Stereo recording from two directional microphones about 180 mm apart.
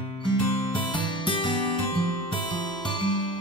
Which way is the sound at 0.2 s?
25° left (ahead or behind).